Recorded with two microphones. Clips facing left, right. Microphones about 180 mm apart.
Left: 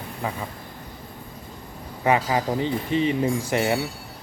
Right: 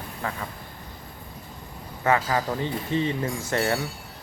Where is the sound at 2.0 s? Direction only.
15° left (ahead or behind).